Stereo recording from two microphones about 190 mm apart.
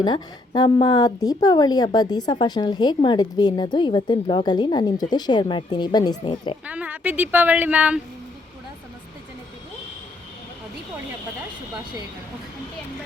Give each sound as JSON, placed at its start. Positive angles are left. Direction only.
{"t": 0.0, "sound": "a woman's voice", "side_deg": 25}
{"t": 6.7, "sound": "a woman's voice", "side_deg": -10}